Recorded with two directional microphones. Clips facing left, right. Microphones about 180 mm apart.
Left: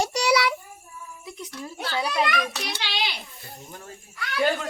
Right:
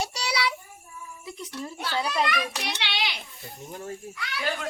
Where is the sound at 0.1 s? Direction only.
55° left (ahead or behind).